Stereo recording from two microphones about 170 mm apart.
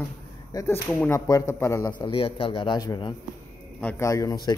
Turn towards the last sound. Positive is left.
turn(degrees=25)  # may be behind; listen again after turning